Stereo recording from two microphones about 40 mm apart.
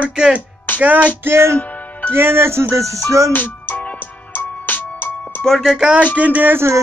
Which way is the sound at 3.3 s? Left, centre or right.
Left.